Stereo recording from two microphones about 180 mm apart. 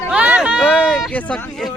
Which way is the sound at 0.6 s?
10° left (ahead or behind).